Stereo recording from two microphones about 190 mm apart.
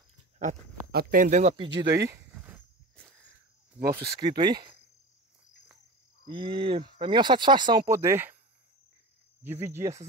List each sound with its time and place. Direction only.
0.9 s speech: 45° right (ahead or behind)
1.6 s speech: 25° right (ahead or behind)
3.8 s speech: 55° right (ahead or behind)
4.1 s speech: 20° right (ahead or behind)
6.2 s speech: 25° right (ahead or behind)
7.9 s speech: 15° right (ahead or behind)
9.4 s speech: 10° right (ahead or behind)